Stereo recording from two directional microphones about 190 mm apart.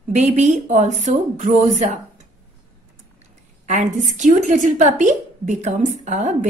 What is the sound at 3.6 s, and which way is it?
A woman's voice, 40° right (ahead or behind).